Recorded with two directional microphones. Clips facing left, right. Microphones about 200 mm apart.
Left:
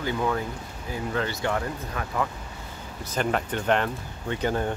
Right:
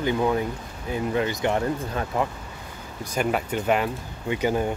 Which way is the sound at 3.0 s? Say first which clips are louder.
Right 2 dB; 10° right (ahead or behind).